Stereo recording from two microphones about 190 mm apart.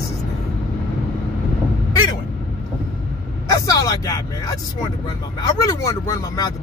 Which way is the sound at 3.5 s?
20° left (ahead or behind).